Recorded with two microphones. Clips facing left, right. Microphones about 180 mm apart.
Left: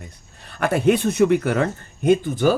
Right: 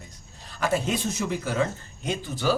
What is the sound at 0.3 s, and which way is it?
Speech, 60° left (ahead or behind).